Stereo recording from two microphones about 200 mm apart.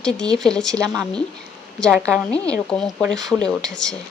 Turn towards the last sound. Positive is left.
turn(degrees=5)  # may be behind; listen again after turning